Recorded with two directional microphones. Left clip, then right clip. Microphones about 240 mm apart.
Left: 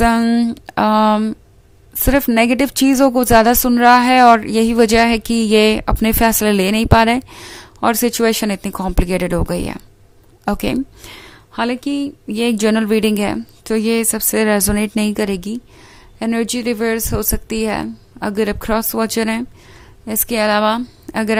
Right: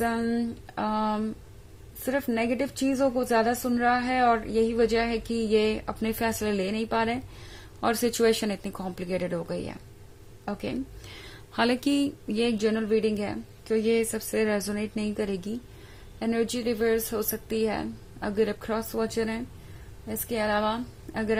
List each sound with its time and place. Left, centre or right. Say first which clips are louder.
0.0 s speech: left 13 dB; left